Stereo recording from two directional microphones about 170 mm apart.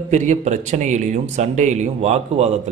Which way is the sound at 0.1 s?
45° right (ahead or behind).